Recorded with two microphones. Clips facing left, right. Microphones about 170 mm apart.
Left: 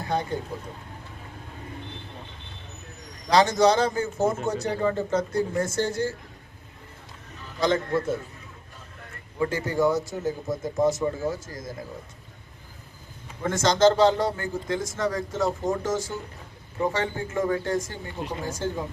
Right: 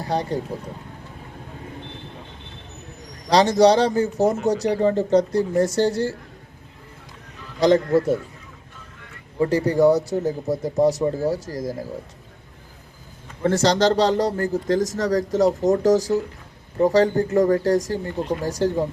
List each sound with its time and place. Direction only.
0.0 s speech: 35° right (ahead or behind)
3.2 s a man's voice: 35° right (ahead or behind)
7.6 s a man's voice: 35° right (ahead or behind)
9.4 s a man's voice: 35° right (ahead or behind)
13.4 s a man's voice: 35° right (ahead or behind)